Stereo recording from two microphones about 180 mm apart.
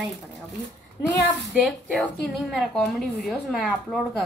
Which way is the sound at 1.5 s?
Centre (ahead or behind).